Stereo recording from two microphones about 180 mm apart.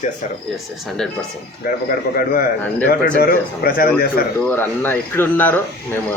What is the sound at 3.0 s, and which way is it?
A man's voice, 55° left (ahead or behind).